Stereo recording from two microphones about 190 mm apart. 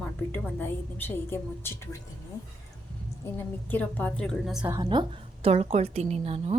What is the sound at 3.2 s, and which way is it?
A woman's voice, 10° left (ahead or behind).